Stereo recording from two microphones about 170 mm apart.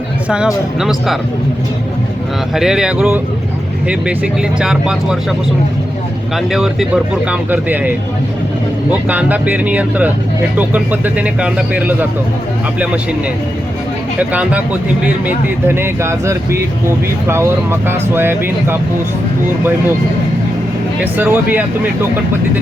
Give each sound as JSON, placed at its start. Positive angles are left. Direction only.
{"t": 0.3, "sound": "speech", "side_deg": -5}
{"t": 2.6, "sound": "speech", "side_deg": -5}
{"t": 6.3, "sound": "speech", "side_deg": 0}
{"t": 14.2, "sound": "speech", "side_deg": -10}
{"t": 21.0, "sound": "speech", "side_deg": -10}